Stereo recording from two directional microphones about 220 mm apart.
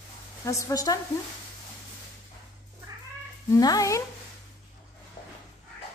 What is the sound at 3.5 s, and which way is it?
Speech, 15° left (ahead or behind).